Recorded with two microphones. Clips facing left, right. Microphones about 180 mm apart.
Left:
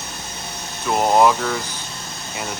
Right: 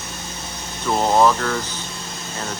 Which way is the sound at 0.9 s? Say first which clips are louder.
Left 1 dB; 10° left (ahead or behind).